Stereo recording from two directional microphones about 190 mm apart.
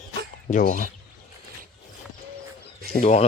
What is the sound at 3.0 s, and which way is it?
Speech, 35° left (ahead or behind).